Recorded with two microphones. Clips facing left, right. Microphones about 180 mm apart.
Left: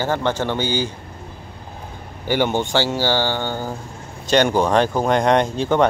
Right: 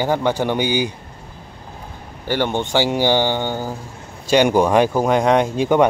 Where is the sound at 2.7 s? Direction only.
15° right (ahead or behind).